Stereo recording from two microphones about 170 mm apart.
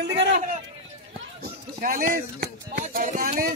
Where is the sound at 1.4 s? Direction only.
55° right (ahead or behind).